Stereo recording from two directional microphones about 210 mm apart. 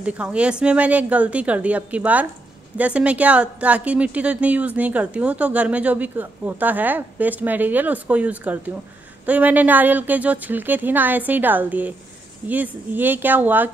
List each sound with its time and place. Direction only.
0.0 s a woman's voice: 5° right (ahead or behind)